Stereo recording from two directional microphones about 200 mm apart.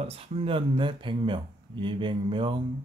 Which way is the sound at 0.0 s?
30° right (ahead or behind).